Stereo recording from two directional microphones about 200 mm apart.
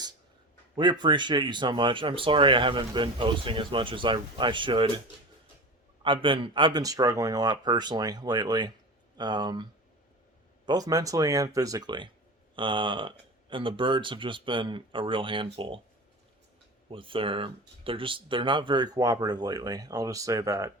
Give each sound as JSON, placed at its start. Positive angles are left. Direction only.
{"t": 0.8, "sound": "speech", "side_deg": -20}
{"t": 6.0, "sound": "speech", "side_deg": -25}
{"t": 10.7, "sound": "speech", "side_deg": -20}
{"t": 16.9, "sound": "speech", "side_deg": -25}